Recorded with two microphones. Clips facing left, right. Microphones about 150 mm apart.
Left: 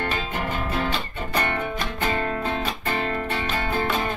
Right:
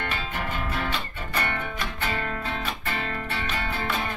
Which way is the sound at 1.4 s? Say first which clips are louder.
Left 3 dB; 35° left (ahead or behind).